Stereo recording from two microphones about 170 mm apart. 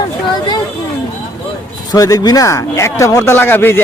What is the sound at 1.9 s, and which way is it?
Speech, 20° left (ahead or behind).